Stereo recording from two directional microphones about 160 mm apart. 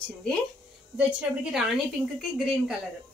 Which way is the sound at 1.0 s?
10° right (ahead or behind).